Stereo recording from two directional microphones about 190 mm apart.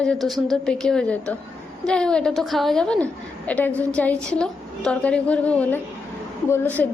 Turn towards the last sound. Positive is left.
turn(degrees=10)  # may be behind; listen again after turning